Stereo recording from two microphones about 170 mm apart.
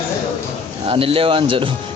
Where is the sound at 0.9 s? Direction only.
35° right (ahead or behind).